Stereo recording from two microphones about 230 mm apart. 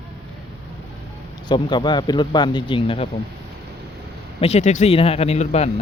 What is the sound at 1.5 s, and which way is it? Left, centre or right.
Speech, centre.